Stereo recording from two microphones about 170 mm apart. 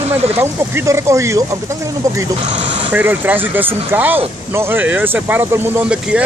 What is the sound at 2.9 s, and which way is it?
Speech, 10° right (ahead or behind).